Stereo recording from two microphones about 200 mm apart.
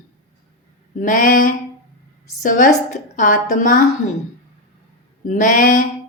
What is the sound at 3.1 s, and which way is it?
Speech, 40° left (ahead or behind).